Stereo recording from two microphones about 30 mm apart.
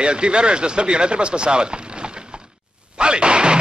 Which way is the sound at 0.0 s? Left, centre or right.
Right.